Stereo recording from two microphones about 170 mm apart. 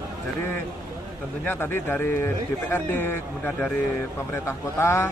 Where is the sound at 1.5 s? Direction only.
10° left (ahead or behind).